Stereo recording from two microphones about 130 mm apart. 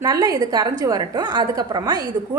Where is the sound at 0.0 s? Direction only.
30° right (ahead or behind).